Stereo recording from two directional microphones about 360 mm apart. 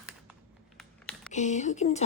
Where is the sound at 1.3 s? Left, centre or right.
Centre.